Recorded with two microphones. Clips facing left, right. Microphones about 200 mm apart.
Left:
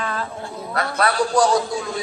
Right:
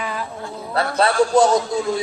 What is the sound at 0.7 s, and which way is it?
Speech, 30° right (ahead or behind).